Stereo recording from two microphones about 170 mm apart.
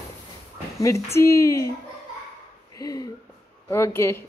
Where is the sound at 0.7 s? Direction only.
15° left (ahead or behind).